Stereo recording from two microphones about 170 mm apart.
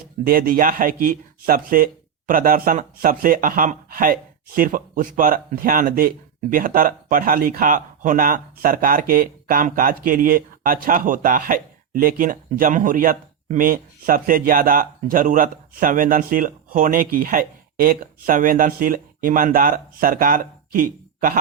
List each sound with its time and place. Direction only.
0.3 s speech: 60° right (ahead or behind)